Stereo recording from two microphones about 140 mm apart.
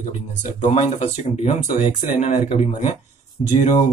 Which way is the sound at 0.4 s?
60° left (ahead or behind).